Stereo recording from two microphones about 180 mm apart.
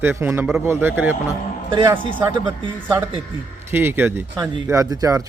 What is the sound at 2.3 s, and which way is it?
Speech, 25° right (ahead or behind).